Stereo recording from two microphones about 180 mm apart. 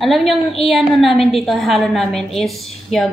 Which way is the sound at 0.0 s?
Centre (ahead or behind).